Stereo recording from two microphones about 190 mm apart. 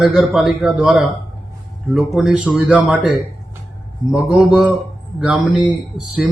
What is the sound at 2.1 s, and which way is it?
Speech, 5° right (ahead or behind).